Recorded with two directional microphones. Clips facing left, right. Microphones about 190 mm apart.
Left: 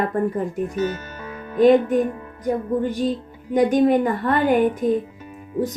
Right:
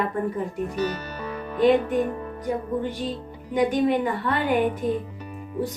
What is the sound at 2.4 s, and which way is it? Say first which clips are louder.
Speech: left 5 dB; 45° left (ahead or behind).